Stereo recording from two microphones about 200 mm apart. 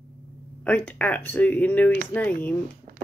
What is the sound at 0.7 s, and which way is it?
Speech, 5° left (ahead or behind).